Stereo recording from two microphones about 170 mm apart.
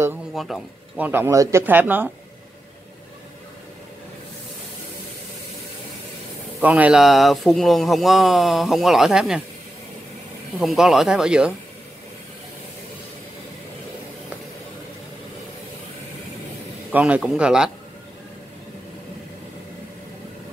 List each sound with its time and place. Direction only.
0.3 s speech: centre (ahead or behind)
6.6 s a man's voice: 10° right (ahead or behind)
10.6 s a man's voice: centre (ahead or behind)
16.9 s a man's voice: 5° right (ahead or behind)